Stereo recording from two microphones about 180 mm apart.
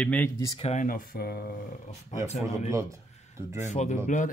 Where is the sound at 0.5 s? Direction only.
40° left (ahead or behind); by 1.9 s 55° left (ahead or behind).